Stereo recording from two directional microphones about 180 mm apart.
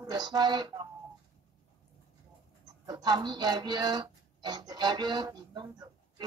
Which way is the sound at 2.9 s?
25° right (ahead or behind).